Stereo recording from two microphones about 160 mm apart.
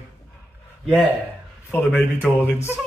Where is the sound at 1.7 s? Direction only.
10° left (ahead or behind).